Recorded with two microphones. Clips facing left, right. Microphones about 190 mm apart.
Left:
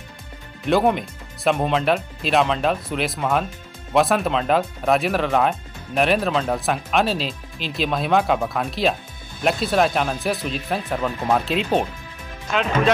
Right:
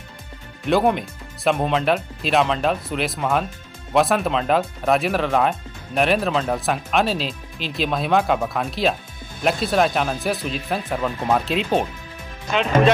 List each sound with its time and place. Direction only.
0.7 s speech: centre (ahead or behind)